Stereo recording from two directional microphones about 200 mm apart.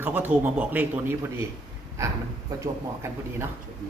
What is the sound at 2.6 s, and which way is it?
Speech, 15° right (ahead or behind).